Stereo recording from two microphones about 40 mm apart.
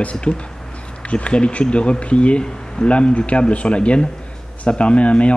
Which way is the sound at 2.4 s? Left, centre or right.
Centre.